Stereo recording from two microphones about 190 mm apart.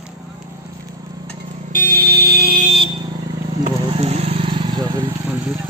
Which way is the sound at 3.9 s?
35° right (ahead or behind).